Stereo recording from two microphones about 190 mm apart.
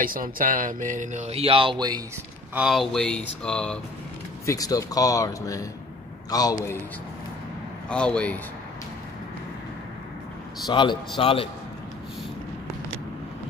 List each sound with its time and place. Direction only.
0.0 s speech: 45° right (ahead or behind); by 2.0 s 25° right (ahead or behind)
2.5 s speech: 5° right (ahead or behind)
4.5 s speech: 20° left (ahead or behind)
7.9 s speech: 5° left (ahead or behind)
10.7 s speech: 25° left (ahead or behind)